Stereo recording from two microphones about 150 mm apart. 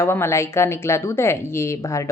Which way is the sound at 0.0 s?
15° left (ahead or behind).